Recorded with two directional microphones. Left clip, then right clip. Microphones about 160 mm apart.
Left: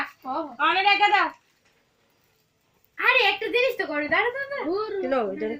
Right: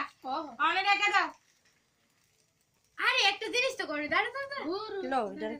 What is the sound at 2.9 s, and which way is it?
A woman's voice, 10° right (ahead or behind).